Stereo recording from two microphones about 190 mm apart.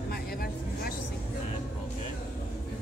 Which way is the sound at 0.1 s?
50° left (ahead or behind).